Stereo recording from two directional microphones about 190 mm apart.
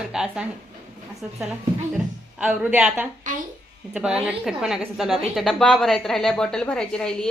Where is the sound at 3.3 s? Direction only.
40° right (ahead or behind).